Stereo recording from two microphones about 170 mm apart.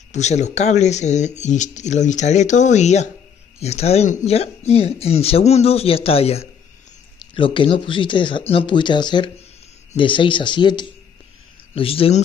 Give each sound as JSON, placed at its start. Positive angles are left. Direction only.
{"t": 0.1, "sound": "speech", "side_deg": 45}